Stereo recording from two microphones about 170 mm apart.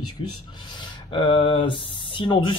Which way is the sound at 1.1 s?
30° left (ahead or behind).